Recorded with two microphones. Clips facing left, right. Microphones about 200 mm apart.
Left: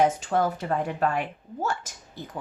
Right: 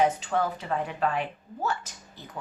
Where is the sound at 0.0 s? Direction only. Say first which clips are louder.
Left 2 dB; 45° left (ahead or behind).